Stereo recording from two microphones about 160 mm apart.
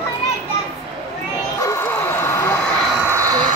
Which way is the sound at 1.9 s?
15° left (ahead or behind).